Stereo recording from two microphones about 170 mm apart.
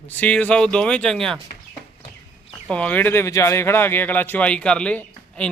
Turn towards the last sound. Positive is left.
turn(degrees=5)  # may be behind; listen again after turning